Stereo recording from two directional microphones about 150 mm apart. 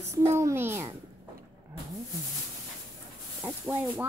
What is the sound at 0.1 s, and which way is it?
Speech, 15° right (ahead or behind).